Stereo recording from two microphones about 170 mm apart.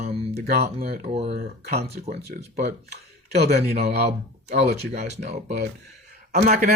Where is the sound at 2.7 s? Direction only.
65° right (ahead or behind).